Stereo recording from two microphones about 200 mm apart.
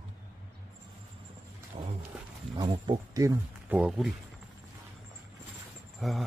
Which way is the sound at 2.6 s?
20° right (ahead or behind).